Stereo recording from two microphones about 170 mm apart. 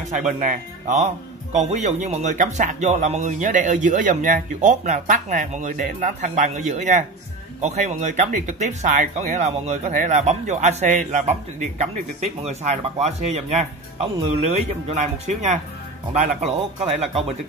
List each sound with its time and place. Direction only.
0.3 s speech: 50° right (ahead or behind)